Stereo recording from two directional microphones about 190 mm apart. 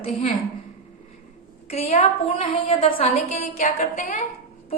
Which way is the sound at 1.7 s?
35° left (ahead or behind).